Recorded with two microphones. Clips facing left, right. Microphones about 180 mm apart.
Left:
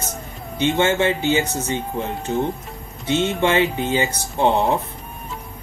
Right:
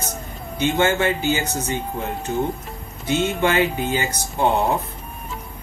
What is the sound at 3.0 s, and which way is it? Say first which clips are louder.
Speech: left 1 dB; 25° left (ahead or behind).